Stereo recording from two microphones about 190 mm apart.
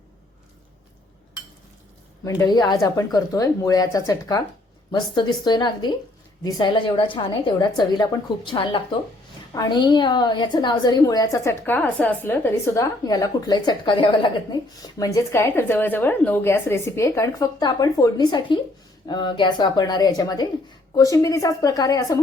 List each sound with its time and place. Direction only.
2.2 s a woman's voice: 20° left (ahead or behind)